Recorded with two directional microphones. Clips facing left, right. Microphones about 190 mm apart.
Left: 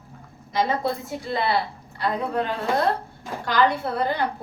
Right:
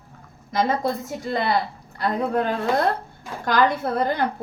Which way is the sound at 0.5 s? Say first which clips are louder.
Right 1 dB; 45° right (ahead or behind).